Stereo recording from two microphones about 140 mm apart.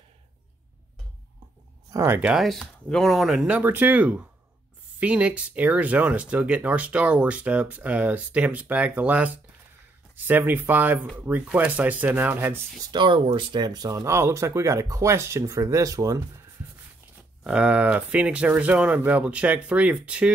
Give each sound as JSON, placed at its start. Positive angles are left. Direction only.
{"t": 1.9, "sound": "speech", "side_deg": -20}
{"t": 12.9, "sound": "speech", "side_deg": -35}
{"t": 17.4, "sound": "speech", "side_deg": -5}